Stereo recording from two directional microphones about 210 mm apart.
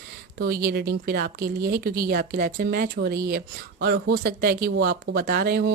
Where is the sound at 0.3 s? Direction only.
50° right (ahead or behind).